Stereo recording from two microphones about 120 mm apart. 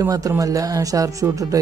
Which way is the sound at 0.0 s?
30° right (ahead or behind).